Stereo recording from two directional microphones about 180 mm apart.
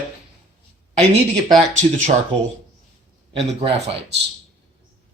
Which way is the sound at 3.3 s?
35° right (ahead or behind).